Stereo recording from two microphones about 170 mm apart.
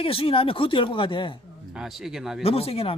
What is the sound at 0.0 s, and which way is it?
Speech, 35° left (ahead or behind).